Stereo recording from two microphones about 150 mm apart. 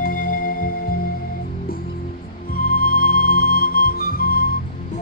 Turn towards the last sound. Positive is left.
turn(degrees=80)